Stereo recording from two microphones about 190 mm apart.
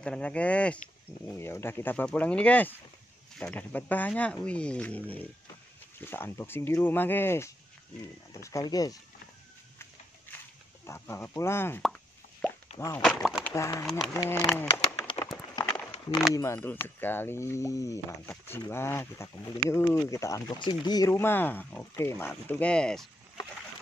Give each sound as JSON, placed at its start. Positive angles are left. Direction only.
{"t": 0.0, "sound": "speech", "side_deg": 5}
{"t": 10.9, "sound": "speech", "side_deg": 15}
{"t": 11.8, "sound": "plop", "side_deg": 0}
{"t": 12.7, "sound": "speech", "side_deg": 15}
{"t": 13.0, "sound": "speech", "side_deg": 0}
{"t": 13.8, "sound": "speech", "side_deg": 0}
{"t": 15.5, "sound": "a sound", "side_deg": 20}
{"t": 16.3, "sound": "speech", "side_deg": 10}